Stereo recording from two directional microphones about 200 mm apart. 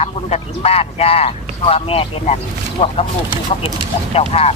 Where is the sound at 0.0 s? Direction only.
30° left (ahead or behind).